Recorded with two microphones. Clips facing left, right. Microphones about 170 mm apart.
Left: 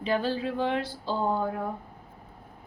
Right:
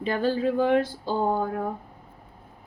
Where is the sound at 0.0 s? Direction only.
50° right (ahead or behind).